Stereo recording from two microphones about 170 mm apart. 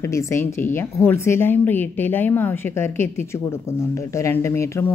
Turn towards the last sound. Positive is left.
turn(degrees=15)  # may be behind; listen again after turning